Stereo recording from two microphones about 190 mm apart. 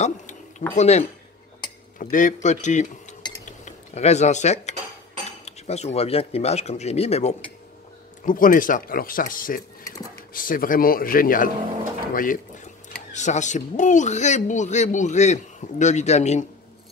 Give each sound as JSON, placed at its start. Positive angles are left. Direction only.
{"t": 0.0, "sound": "a sound", "side_deg": 40}
{"t": 0.7, "sound": "speech", "side_deg": 35}
{"t": 3.4, "sound": "cutlery", "side_deg": 40}
{"t": 5.4, "sound": "speech", "side_deg": 35}
{"t": 8.3, "sound": "speech", "side_deg": 45}